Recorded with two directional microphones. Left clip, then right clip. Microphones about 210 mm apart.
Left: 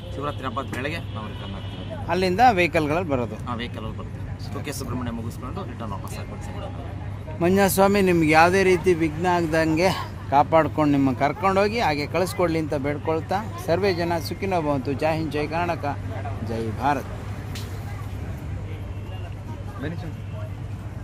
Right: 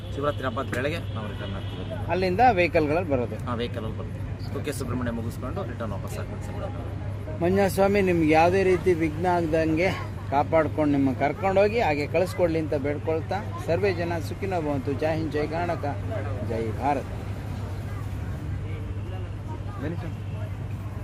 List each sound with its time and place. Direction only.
0.2 s speech: 10° left (ahead or behind)
2.0 s speech: 55° left (ahead or behind)
3.4 s speech: 10° left (ahead or behind)
7.4 s speech: 55° left (ahead or behind)